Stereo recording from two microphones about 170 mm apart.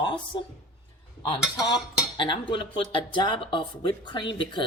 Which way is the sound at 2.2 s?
30° left (ahead or behind).